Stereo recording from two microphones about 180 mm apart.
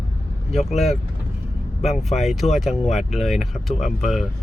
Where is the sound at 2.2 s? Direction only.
Centre (ahead or behind).